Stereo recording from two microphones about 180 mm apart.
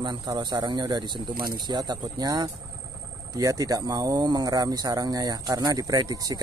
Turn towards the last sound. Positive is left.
turn(degrees=-20)  # may be behind; listen again after turning